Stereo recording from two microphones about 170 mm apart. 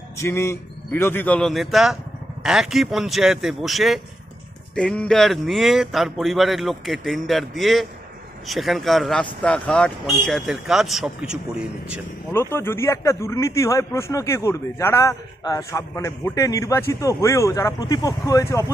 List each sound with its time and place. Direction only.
0.2 s speech: 15° left (ahead or behind); by 11.3 s 5° right (ahead or behind)
12.3 s a man's voice: 15° left (ahead or behind)